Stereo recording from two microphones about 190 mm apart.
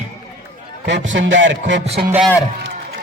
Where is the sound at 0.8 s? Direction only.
75° right (ahead or behind).